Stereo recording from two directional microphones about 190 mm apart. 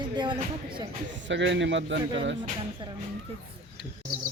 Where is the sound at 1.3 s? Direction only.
70° right (ahead or behind).